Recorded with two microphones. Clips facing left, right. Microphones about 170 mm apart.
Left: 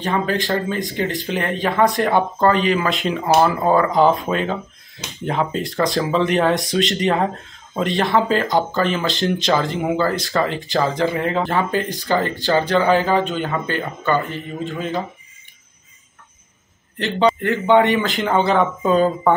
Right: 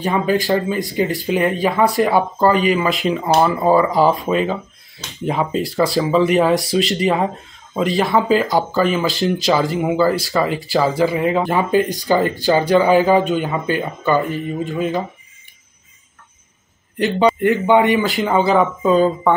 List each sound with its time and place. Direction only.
0.0 s speech: 10° right (ahead or behind)
17.0 s speech: 15° right (ahead or behind)
17.9 s speech: centre (ahead or behind)